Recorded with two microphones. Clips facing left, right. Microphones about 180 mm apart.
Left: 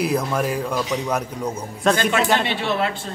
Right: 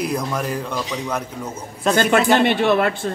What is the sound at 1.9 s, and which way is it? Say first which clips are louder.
Speech: right 4 dB; 55° right (ahead or behind).